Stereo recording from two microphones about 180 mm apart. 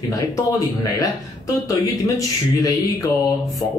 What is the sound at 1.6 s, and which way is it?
Speech, 20° left (ahead or behind).